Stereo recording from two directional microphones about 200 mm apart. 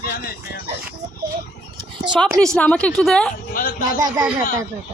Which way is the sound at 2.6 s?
5° left (ahead or behind).